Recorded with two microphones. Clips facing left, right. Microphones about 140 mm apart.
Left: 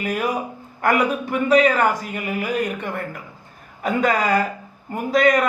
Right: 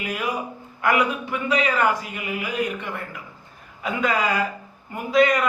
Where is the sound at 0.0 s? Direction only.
45° left (ahead or behind).